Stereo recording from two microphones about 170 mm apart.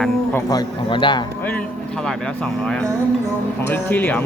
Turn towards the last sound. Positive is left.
turn(degrees=10)  # may be behind; listen again after turning